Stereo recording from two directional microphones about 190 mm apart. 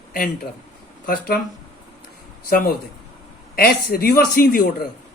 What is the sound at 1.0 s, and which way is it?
Speech, 50° left (ahead or behind).